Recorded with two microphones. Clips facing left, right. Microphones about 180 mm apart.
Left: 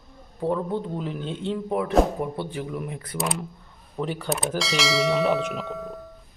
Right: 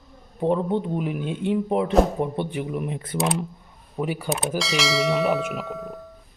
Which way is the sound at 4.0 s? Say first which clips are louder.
Right 2 dB; 10° right (ahead or behind).